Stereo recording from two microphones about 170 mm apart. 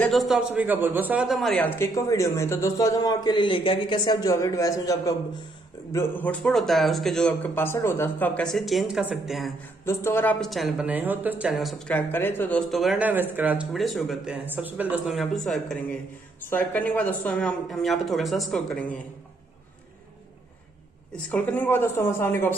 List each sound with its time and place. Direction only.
0.0 s a man's voice: centre (ahead or behind)
9.8 s a man's voice: 15° left (ahead or behind)
10.4 s speech: centre (ahead or behind)
21.3 s a man's voice: 10° left (ahead or behind)